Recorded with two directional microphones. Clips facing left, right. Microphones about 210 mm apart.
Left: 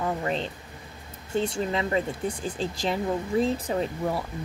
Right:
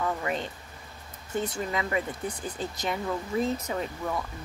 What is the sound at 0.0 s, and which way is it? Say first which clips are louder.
Speech: left 2 dB; 30° left (ahead or behind).